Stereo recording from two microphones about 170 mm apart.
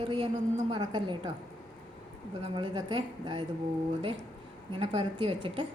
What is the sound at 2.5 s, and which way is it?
Speech, 25° right (ahead or behind).